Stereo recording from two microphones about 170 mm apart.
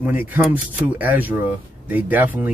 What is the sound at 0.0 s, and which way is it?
Speech, 10° right (ahead or behind).